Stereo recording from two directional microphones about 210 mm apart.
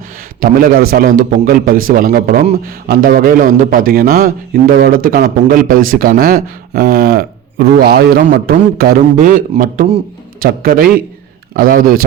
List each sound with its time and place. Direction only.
0.3 s a man's voice: 40° right (ahead or behind)